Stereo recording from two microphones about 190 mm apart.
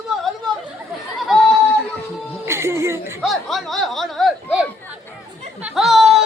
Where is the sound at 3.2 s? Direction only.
Centre (ahead or behind).